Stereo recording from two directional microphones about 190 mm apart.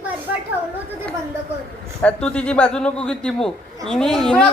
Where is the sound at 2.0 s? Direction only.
5° left (ahead or behind).